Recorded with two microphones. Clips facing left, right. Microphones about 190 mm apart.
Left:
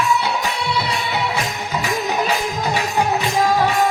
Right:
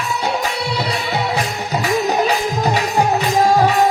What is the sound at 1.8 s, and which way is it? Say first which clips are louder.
Music: right 5 dB; 40° right (ahead or behind).